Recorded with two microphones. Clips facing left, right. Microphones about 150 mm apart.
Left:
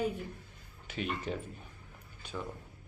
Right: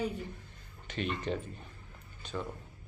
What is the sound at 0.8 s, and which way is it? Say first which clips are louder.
Speech: right 2 dB; 5° left (ahead or behind).